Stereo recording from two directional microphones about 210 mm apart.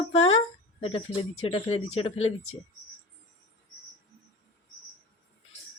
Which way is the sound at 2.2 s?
80° left.